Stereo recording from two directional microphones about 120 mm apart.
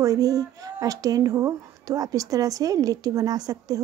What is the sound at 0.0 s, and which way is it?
Speech, 30° right (ahead or behind).